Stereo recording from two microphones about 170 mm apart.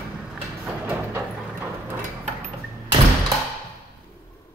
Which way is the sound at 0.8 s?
10° right (ahead or behind).